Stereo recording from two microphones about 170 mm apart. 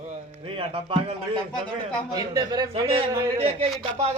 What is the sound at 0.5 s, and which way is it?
Speech, 35° right (ahead or behind).